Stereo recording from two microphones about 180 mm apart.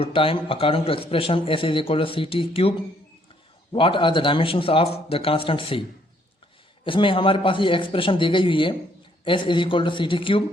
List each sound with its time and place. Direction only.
0.0 s a man's voice: 30° left (ahead or behind)
6.8 s a man's voice: 30° left (ahead or behind)